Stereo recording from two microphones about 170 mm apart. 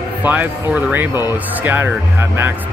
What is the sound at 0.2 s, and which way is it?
Speech, 10° right (ahead or behind).